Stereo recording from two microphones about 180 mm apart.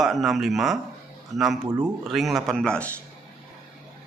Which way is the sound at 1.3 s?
40° right (ahead or behind).